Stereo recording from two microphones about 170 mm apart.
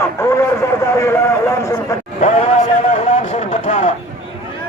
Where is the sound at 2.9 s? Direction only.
40° left (ahead or behind).